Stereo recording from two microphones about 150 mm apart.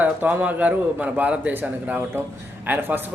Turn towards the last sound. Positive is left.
turn(degrees=-15)  # may be behind; listen again after turning